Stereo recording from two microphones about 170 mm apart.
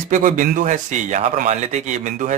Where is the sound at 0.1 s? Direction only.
50° right (ahead or behind).